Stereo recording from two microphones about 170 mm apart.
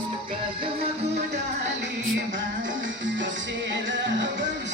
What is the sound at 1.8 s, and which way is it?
Music, 90° right.